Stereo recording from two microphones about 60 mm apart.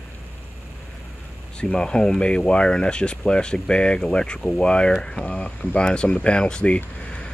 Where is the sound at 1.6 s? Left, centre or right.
Centre.